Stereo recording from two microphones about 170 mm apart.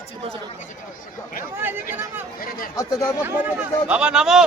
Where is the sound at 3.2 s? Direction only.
10° right (ahead or behind).